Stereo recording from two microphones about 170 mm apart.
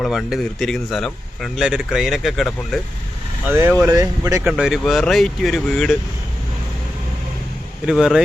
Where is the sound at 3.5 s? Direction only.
10° right (ahead or behind).